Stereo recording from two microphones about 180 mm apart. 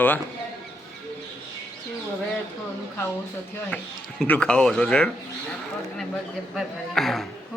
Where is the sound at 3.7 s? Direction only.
5° left (ahead or behind).